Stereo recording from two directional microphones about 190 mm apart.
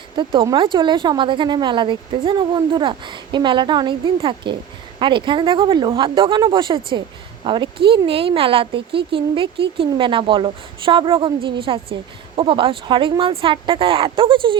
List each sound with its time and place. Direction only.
0.2 s speech: 25° right (ahead or behind)